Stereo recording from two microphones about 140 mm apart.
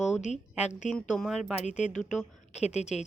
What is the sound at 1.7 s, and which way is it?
A woman's voice, 60° left (ahead or behind).